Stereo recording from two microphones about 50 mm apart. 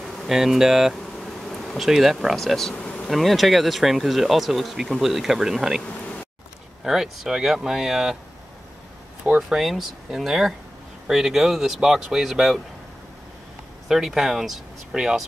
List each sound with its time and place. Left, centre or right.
0.3 s bee: centre
2.2 s speech: centre
2.8 s bee: left
3.1 s speech: centre
6.8 s speech: centre
9.5 s speech: centre
13.8 s speech: centre